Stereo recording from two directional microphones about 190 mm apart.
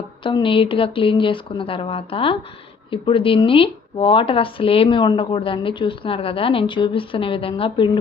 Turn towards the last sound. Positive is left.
turn(degrees=25)  # may be behind; listen again after turning